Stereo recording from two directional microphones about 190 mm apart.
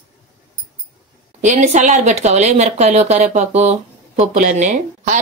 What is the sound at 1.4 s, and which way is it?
Speech, 40° right (ahead or behind).